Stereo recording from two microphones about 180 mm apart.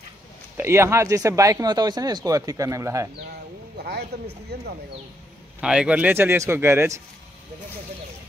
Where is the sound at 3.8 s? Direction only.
65° right (ahead or behind).